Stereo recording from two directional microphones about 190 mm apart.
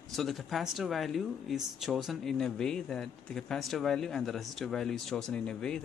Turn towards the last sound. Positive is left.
turn(degrees=5)  # may be behind; listen again after turning